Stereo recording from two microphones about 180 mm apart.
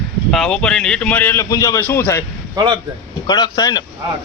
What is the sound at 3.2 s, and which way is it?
Speech, 25° left (ahead or behind).